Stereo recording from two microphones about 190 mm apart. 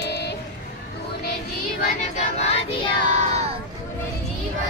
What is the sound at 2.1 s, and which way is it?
Choir, 35° left (ahead or behind).